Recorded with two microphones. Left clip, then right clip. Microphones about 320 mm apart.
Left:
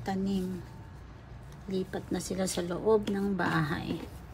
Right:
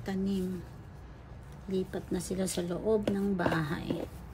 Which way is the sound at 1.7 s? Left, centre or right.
Centre.